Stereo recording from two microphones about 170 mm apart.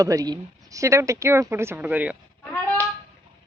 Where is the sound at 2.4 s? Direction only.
10° left (ahead or behind).